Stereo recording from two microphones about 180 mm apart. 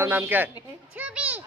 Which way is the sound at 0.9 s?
5° right (ahead or behind).